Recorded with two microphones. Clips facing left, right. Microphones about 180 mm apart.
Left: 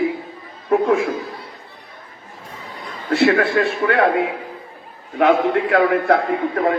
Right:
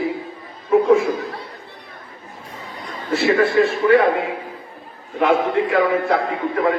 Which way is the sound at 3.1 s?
60° left (ahead or behind).